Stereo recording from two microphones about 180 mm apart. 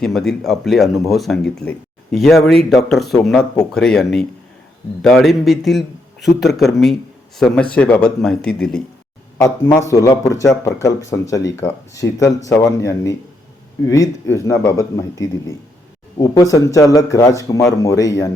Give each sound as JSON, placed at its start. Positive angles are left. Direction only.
{"t": 0.0, "sound": "speech", "side_deg": 0}
{"t": 9.4, "sound": "speech", "side_deg": 15}